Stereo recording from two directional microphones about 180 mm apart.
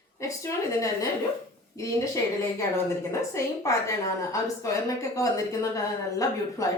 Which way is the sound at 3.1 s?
15° left (ahead or behind).